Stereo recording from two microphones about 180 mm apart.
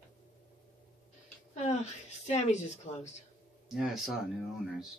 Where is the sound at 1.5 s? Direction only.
40° left (ahead or behind).